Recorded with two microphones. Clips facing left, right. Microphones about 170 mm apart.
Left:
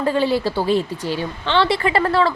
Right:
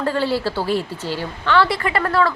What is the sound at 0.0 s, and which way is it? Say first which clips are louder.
A woman's voice: left 2 dB; 15° left (ahead or behind).